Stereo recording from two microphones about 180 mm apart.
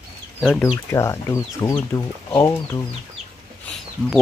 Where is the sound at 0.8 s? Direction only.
15° left (ahead or behind).